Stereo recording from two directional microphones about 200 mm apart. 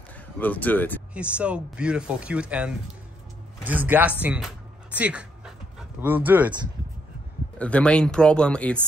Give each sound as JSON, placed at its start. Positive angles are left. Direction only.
{"t": 0.4, "sound": "speech", "side_deg": 10}
{"t": 1.1, "sound": "speech", "side_deg": -5}
{"t": 4.9, "sound": "dog", "side_deg": -5}
{"t": 7.5, "sound": "speech", "side_deg": 5}